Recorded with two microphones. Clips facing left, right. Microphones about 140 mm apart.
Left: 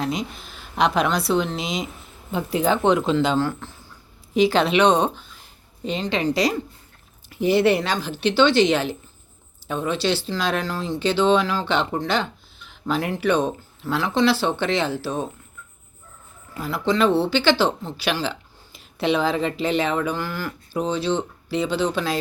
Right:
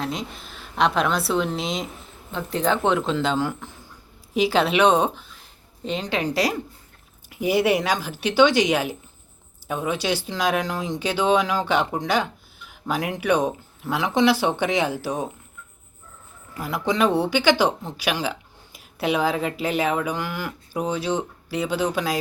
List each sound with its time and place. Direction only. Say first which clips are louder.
0.0 s a woman's voice: left 3 dB; centre (ahead or behind)
3.3 s speech: left 2 dB; 10° right (ahead or behind)
16.6 s speech: left 1 dB; 15° right (ahead or behind)